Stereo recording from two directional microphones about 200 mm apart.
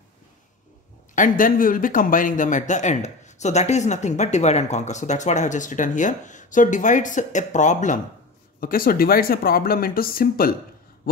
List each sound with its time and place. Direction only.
1.1 s speech: 40° left (ahead or behind)